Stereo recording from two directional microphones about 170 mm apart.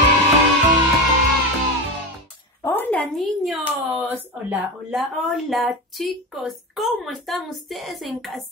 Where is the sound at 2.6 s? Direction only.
10° left (ahead or behind).